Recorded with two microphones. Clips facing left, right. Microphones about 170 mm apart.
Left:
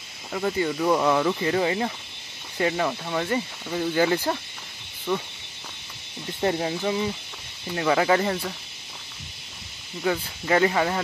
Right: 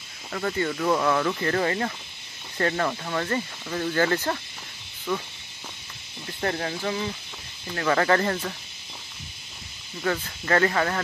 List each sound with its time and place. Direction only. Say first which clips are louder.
0.3 s speech: left 2 dB; 10° left (ahead or behind)
6.4 s speech: left 3 dB; 15° left (ahead or behind)
10.0 s speech: left 2 dB; 10° left (ahead or behind)